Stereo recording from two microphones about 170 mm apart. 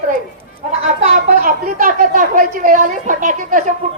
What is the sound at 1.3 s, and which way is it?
A woman's voice, 55° right (ahead or behind).